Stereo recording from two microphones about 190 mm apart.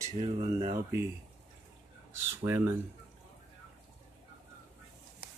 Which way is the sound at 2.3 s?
10° right (ahead or behind).